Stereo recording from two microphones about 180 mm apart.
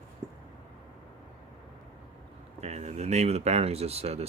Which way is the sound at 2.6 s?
40° right (ahead or behind).